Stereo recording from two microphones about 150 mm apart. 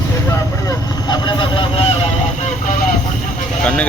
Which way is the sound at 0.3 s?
25° left (ahead or behind).